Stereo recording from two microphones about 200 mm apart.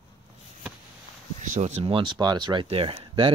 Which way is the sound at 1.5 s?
35° right (ahead or behind).